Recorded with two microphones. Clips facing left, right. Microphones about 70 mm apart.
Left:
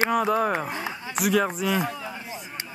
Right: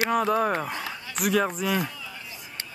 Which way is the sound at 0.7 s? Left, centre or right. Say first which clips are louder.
Left 2 dB; left.